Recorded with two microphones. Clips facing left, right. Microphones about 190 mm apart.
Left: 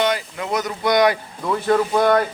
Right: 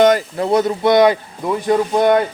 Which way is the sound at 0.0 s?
45° right (ahead or behind).